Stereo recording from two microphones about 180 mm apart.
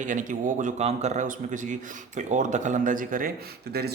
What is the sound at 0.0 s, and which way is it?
Speech, 45° right (ahead or behind).